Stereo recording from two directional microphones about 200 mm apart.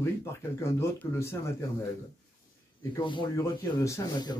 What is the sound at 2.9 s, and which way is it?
Speech, 25° left (ahead or behind).